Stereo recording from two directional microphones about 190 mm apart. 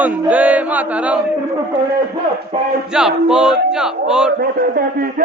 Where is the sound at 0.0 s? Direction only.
10° right (ahead or behind).